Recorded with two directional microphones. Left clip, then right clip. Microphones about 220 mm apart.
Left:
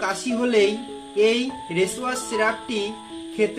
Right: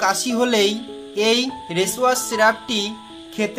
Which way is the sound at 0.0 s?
45° right (ahead or behind).